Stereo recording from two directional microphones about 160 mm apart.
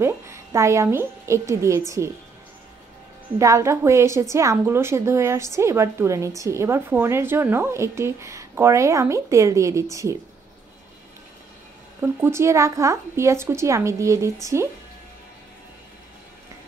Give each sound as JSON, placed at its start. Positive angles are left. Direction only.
{"t": 0.0, "sound": "a woman's voice", "side_deg": -20}
{"t": 3.3, "sound": "a woman's voice", "side_deg": -20}
{"t": 12.0, "sound": "speech", "side_deg": -15}